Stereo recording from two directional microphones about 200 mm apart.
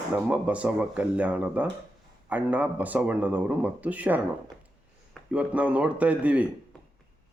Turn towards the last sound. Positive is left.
turn(degrees=-5)  # may be behind; listen again after turning